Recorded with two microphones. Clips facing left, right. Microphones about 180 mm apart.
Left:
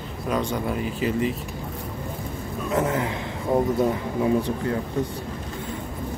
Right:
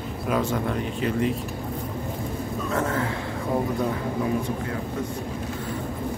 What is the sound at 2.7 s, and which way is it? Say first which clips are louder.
Speech: left 3 dB; 15° left (ahead or behind).